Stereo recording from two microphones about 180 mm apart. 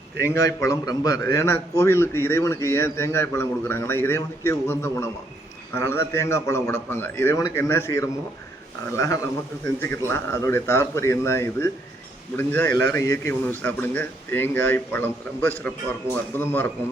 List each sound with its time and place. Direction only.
0.3 s a man's voice: 20° left (ahead or behind)